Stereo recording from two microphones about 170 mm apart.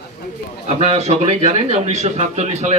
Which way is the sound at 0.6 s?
40° right (ahead or behind).